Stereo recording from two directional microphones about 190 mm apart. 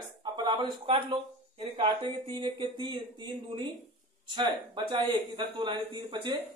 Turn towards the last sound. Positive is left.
turn(degrees=-25)  # may be behind; listen again after turning